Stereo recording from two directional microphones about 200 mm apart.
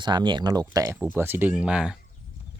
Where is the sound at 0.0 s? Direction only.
20° right (ahead or behind); by 2.0 s 5° right (ahead or behind).